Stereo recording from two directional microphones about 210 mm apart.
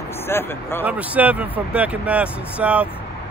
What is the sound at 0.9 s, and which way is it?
Speech, 5° right (ahead or behind).